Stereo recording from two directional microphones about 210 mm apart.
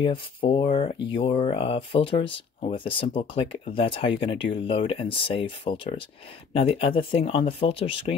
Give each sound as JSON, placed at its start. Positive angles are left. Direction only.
{"t": 0.0, "sound": "speech", "side_deg": 25}